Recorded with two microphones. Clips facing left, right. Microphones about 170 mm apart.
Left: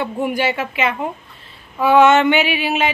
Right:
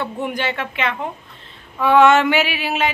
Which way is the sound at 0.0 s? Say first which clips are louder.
Left 4 dB; 10° left (ahead or behind).